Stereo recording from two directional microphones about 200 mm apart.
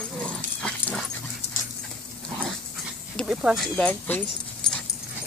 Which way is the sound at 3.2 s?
Centre (ahead or behind).